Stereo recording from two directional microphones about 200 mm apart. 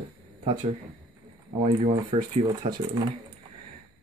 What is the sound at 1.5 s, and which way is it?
Speech, 30° right (ahead or behind).